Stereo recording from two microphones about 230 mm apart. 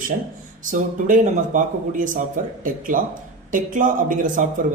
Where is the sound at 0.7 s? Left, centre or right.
Right.